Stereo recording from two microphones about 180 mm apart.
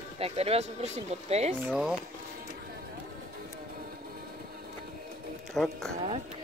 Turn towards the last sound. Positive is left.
turn(degrees=0)  # may be behind; listen again after turning